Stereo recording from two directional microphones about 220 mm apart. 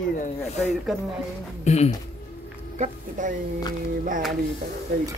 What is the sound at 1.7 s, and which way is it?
Speech, 30° left (ahead or behind).